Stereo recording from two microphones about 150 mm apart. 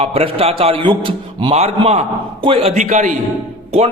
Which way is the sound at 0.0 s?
40° right (ahead or behind).